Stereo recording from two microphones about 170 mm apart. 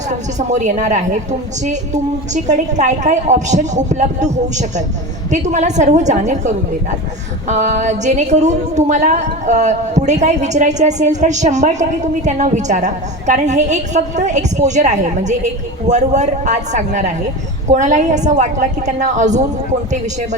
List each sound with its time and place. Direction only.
0.1 s a woman's voice: 45° right (ahead or behind)